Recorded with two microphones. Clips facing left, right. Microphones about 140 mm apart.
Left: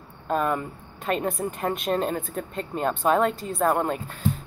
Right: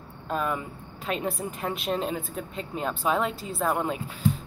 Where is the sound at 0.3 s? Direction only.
45° left (ahead or behind).